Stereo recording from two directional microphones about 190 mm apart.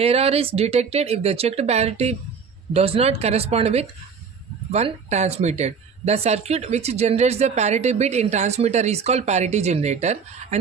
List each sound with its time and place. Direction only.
0.0 s speech: 30° right (ahead or behind)